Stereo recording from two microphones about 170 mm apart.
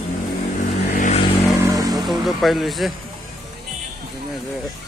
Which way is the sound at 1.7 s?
20° right (ahead or behind).